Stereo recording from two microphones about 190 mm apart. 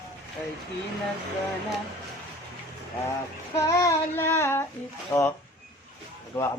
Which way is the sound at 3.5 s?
15° left (ahead or behind).